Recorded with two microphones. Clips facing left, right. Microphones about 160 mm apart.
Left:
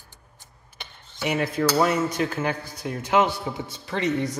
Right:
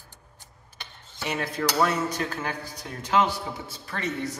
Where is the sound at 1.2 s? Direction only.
10° left (ahead or behind).